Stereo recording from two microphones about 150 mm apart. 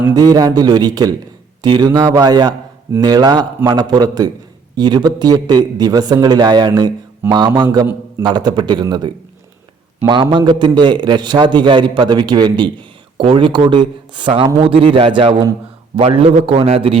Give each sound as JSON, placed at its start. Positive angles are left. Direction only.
{"t": 0.1, "sound": "a man's voice", "side_deg": -25}
{"t": 16.0, "sound": "a man's voice", "side_deg": -40}